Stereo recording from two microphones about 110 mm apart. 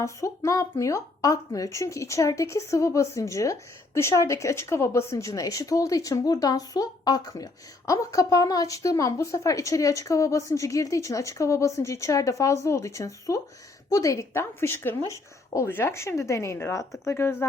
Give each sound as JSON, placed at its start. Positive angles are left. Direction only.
{"t": 0.0, "sound": "speech", "side_deg": 30}